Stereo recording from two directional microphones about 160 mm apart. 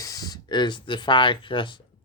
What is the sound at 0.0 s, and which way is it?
Speech, 20° left (ahead or behind).